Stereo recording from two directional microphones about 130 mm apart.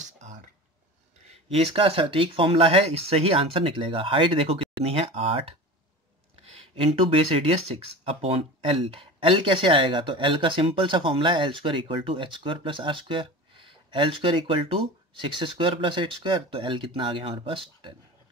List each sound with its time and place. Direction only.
0.0 s a sound: 70° right (ahead or behind)
1.5 s speech: 45° right (ahead or behind)
6.5 s speech: 45° right (ahead or behind)